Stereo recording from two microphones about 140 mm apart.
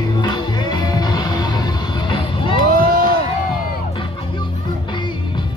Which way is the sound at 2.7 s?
90° right.